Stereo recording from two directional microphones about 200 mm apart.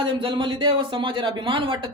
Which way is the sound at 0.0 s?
25° right (ahead or behind).